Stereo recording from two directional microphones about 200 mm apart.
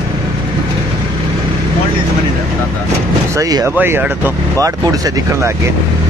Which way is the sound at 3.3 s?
15° right (ahead or behind).